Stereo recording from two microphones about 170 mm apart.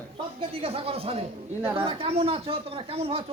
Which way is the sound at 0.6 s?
35° right (ahead or behind).